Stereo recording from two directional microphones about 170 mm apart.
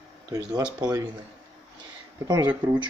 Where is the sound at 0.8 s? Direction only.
25° right (ahead or behind).